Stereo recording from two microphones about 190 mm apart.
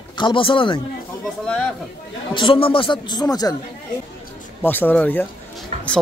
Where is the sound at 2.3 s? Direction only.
25° left (ahead or behind).